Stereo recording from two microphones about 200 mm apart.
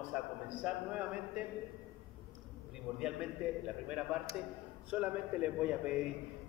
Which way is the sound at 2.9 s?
5° right (ahead or behind).